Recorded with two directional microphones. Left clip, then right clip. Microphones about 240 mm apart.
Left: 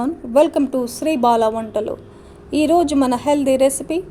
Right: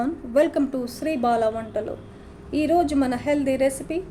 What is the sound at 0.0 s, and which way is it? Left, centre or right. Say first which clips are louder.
A woman's voice: left 6 dB; left.